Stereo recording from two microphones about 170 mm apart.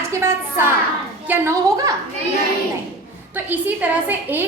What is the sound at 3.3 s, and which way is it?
A woman's voice, 10° right (ahead or behind).